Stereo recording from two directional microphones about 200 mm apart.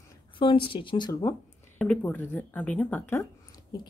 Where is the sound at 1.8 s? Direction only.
10° left (ahead or behind).